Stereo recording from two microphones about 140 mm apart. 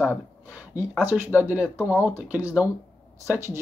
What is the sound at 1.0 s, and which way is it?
Speech, 15° right (ahead or behind).